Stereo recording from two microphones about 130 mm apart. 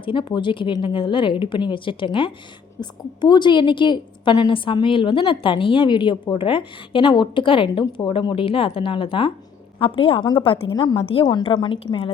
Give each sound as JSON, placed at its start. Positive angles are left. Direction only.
{"t": 0.0, "sound": "a woman's voice", "side_deg": 40}